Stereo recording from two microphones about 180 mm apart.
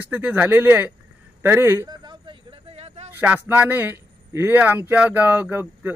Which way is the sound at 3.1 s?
10° right (ahead or behind).